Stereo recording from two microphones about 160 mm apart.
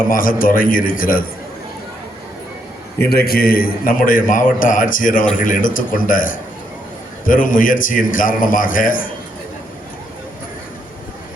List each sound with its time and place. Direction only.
0.0 s a man's voice: 60° left (ahead or behind)
3.0 s a man's voice: 75° left (ahead or behind); by 9.1 s 60° left (ahead or behind)